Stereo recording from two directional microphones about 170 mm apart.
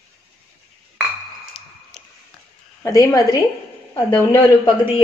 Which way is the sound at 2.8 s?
15° left (ahead or behind).